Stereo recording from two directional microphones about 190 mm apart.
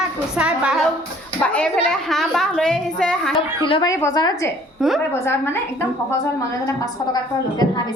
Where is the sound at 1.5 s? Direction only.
5° left (ahead or behind).